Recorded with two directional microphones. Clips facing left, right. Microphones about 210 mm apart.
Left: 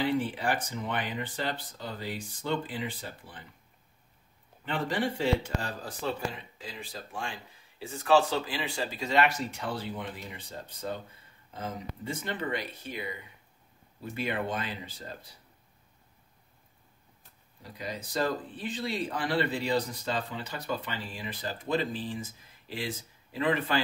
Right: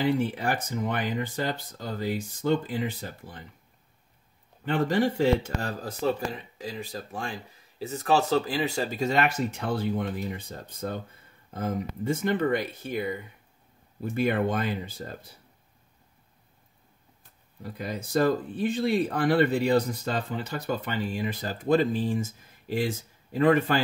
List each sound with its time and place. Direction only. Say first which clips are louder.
0.0 s speech: right 3 dB; 45° right (ahead or behind)
4.6 s speech: right 6 dB; 45° right (ahead or behind)
14.1 s speech: right 7 dB; 50° right (ahead or behind)
17.6 s speech: right 5 dB; 50° right (ahead or behind)